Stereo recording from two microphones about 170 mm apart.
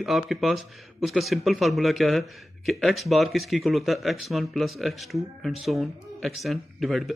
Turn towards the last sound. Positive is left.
turn(degrees=0)  # may be behind; listen again after turning